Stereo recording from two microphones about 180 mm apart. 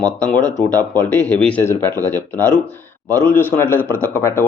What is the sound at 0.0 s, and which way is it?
Speech, 5° left (ahead or behind).